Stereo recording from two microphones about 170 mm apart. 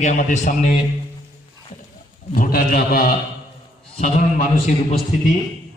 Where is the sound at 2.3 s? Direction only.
55° left (ahead or behind).